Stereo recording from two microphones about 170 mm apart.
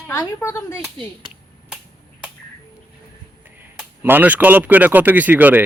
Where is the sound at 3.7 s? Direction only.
10° right (ahead or behind).